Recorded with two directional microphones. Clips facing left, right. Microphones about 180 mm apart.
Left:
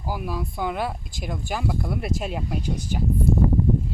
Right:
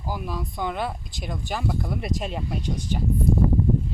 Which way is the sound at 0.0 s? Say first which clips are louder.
Left 2 dB; 10° left (ahead or behind).